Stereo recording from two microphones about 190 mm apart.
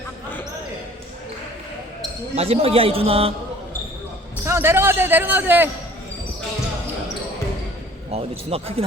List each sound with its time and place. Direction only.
2.3 s a man's voice: 30° right (ahead or behind)
4.4 s a man's voice: 10° right (ahead or behind)
8.1 s a man's voice: 30° right (ahead or behind)